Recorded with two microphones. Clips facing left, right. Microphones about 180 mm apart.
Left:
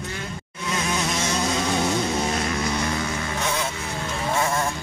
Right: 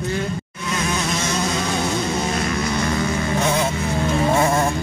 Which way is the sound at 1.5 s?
15° left (ahead or behind).